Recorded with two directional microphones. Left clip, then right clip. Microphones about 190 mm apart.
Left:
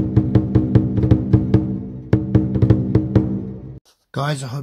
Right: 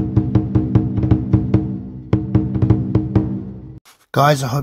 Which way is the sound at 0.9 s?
5° right (ahead or behind).